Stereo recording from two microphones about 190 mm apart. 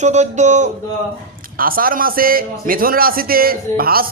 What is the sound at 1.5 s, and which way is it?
A man's voice, 50° right (ahead or behind).